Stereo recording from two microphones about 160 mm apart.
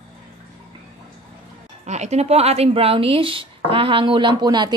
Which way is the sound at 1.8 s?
45° right (ahead or behind).